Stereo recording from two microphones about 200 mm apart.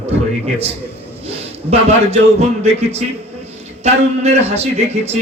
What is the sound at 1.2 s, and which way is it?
Speech, 30° right (ahead or behind).